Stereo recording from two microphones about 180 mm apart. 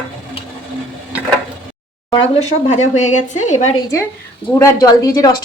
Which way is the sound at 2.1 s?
35° left (ahead or behind).